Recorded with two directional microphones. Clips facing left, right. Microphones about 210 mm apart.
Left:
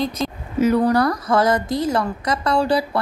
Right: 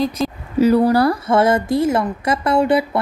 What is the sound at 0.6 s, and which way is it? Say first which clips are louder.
Speech: right 3 dB; 30° right (ahead or behind).